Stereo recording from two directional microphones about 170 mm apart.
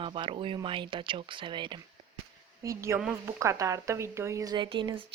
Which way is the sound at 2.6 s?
15° right (ahead or behind).